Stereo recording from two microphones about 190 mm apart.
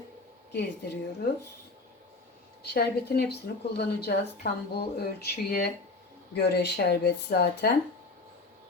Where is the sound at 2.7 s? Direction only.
55° left (ahead or behind).